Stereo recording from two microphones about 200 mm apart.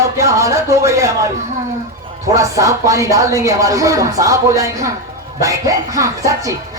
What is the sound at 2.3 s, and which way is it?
Speech, 15° right (ahead or behind).